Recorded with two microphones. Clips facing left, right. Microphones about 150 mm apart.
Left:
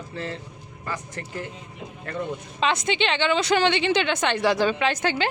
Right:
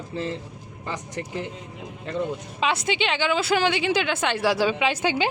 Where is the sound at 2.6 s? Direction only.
5° right (ahead or behind).